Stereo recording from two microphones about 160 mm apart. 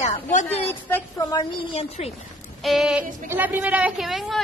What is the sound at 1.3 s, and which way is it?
Speech, 30° left (ahead or behind).